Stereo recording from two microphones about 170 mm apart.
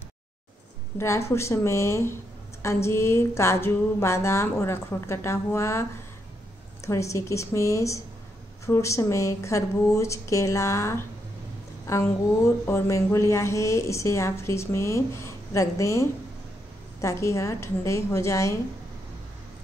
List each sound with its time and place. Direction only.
0.9 s speech: 15° left (ahead or behind)